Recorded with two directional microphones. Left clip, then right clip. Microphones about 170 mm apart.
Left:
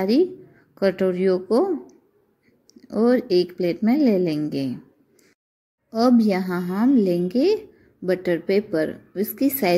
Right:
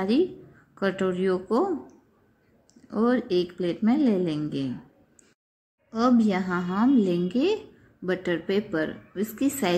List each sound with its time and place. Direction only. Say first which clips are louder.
0.7 s a woman's voice: left 6 dB; 15° left (ahead or behind)
2.9 s speech: left 5 dB; 15° left (ahead or behind)
3.2 s speech: left 5 dB; 30° right (ahead or behind)
3.4 s a woman's voice: left 4 dB; 20° left (ahead or behind)
5.9 s a woman's voice: left 4 dB; 20° left (ahead or behind)